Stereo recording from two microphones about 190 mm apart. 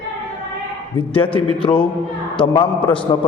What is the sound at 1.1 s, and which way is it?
A man's voice, 30° left (ahead or behind).